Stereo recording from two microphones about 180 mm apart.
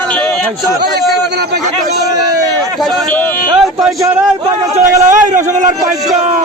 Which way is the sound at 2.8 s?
10° left (ahead or behind).